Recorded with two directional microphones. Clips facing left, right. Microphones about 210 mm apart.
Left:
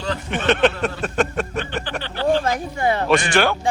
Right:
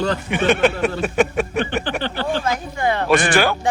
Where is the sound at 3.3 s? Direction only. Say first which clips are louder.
Right 1 dB; 5° right (ahead or behind).